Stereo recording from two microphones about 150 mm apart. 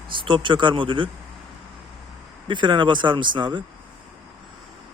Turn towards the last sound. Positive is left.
turn(degrees=-30)  # may be behind; listen again after turning